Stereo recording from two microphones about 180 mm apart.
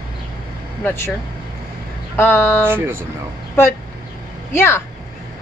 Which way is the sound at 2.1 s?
15° left (ahead or behind).